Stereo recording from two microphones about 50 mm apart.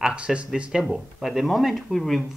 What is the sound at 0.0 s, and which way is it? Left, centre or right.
Speech, right.